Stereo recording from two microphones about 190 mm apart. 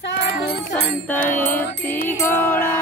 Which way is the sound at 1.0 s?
10° left (ahead or behind).